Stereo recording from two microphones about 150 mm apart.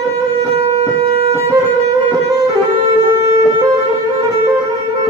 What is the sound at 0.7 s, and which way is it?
Siren, 45° right (ahead or behind).